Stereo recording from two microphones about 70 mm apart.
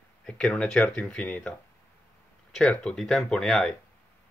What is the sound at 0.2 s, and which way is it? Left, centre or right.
Speech, centre.